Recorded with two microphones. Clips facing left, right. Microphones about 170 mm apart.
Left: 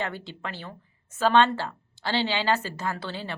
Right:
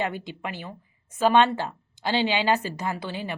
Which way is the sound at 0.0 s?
15° right (ahead or behind).